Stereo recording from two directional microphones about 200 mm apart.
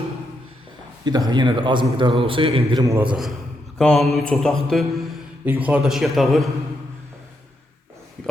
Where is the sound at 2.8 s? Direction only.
10° right (ahead or behind).